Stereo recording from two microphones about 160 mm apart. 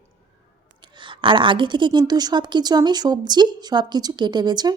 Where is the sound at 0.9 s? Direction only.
30° right (ahead or behind).